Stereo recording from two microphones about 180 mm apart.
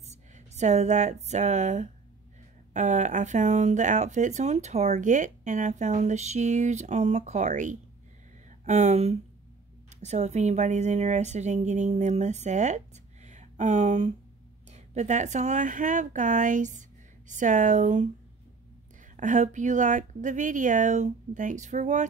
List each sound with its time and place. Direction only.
0.6 s speech: 40° right (ahead or behind)
19.1 s speech: 45° right (ahead or behind)